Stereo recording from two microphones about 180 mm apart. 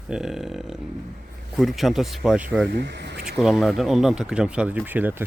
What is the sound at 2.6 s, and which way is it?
Speech, 70° right (ahead or behind).